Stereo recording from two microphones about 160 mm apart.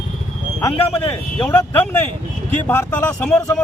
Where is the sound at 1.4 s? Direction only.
10° left (ahead or behind).